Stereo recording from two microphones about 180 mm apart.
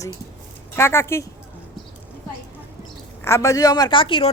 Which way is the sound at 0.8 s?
15° left (ahead or behind).